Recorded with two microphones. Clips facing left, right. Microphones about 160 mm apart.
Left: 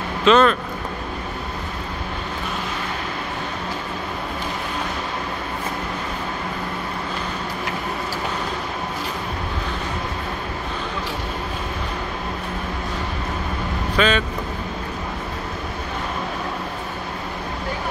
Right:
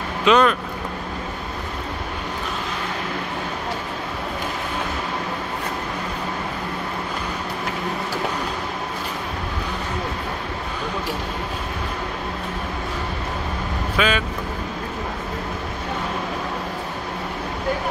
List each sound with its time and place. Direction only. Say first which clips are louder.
0.2 s speech: left 1 dB; 10° right (ahead or behind)
13.9 s speech: left 2 dB; 10° right (ahead or behind)